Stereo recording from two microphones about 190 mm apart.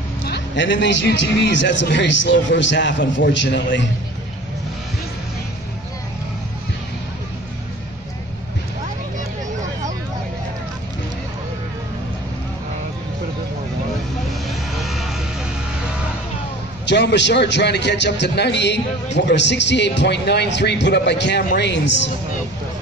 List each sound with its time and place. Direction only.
0.2 s a man's voice: 65° left (ahead or behind)
14.5 s vehicle: centre (ahead or behind)
16.8 s a man's voice: 65° left (ahead or behind)